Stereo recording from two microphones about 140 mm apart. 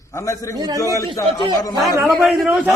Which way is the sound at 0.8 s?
20° left (ahead or behind).